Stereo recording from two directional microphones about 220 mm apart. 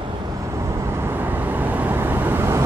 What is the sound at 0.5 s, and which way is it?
Vehicle, 15° right (ahead or behind).